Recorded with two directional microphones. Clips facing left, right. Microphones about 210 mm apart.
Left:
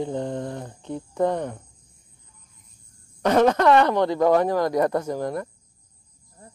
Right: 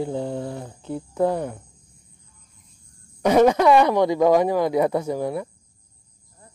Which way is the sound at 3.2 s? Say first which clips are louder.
Right 2 dB; 10° right (ahead or behind).